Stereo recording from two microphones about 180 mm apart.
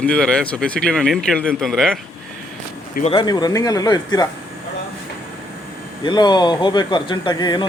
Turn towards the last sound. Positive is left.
turn(degrees=25)  # may be behind; listen again after turning